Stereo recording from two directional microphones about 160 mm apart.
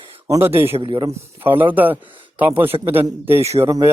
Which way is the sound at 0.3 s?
15° right (ahead or behind).